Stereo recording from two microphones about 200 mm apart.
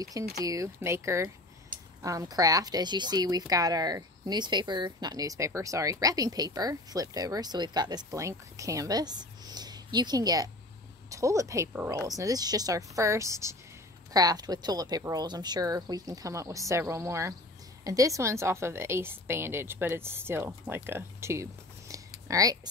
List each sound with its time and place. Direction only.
0.4 s a woman's voice: 15° right (ahead or behind)